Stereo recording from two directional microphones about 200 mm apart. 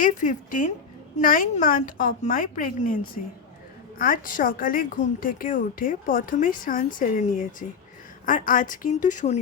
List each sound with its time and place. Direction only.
0.0 s a woman's voice: 40° left (ahead or behind)